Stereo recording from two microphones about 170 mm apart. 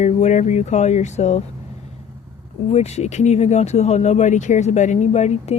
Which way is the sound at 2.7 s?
40° left (ahead or behind).